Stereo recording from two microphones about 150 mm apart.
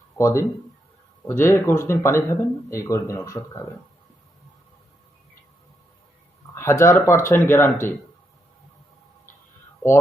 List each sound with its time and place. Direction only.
0.2 s speech: 20° left (ahead or behind)
6.5 s speech: 15° left (ahead or behind)